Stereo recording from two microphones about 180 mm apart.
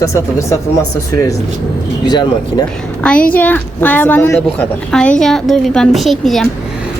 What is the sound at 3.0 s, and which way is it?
A woman's voice, 5° left (ahead or behind).